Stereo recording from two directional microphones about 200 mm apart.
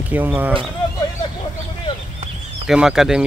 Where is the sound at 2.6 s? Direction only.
Centre (ahead or behind).